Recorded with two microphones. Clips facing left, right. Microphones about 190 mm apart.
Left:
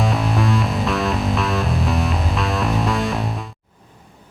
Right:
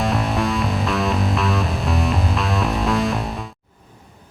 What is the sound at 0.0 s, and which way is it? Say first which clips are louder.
Music: even; centre (ahead or behind).